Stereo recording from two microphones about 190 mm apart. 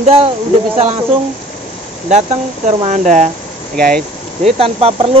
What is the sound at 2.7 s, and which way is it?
Speech, 35° right (ahead or behind).